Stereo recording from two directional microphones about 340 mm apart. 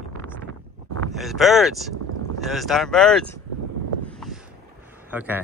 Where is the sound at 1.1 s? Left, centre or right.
Centre.